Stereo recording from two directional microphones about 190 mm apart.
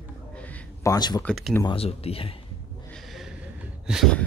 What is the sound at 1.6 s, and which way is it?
Speech, 30° left (ahead or behind).